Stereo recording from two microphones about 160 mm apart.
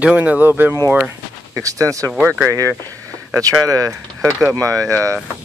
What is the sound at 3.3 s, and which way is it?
Speech, 20° right (ahead or behind).